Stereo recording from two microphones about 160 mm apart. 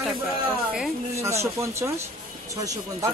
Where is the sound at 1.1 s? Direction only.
20° right (ahead or behind).